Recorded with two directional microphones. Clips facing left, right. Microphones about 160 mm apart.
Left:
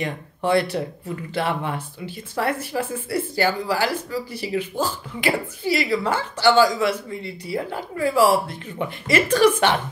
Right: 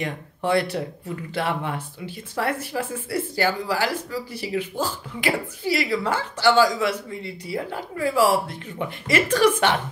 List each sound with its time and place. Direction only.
0.0 s speech: 30° left (ahead or behind)